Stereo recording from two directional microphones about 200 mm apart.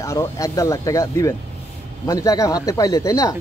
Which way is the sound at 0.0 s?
15° left (ahead or behind).